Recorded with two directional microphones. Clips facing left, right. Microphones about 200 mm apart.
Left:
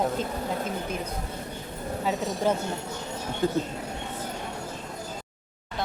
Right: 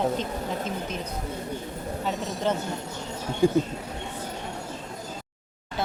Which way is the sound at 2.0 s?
10° left (ahead or behind).